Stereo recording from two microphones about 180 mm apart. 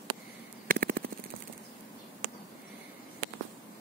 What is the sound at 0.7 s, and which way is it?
Machine gun, 50° right (ahead or behind).